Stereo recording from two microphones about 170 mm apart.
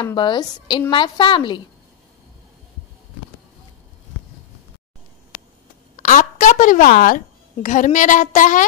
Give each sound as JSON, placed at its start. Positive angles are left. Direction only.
{"t": 0.0, "sound": "a woman's voice", "side_deg": 25}
{"t": 5.9, "sound": "a sound", "side_deg": 50}
{"t": 7.6, "sound": "a woman's voice", "side_deg": 45}